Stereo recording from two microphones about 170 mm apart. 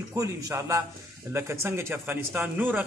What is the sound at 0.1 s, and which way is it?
A man's voice, 20° right (ahead or behind).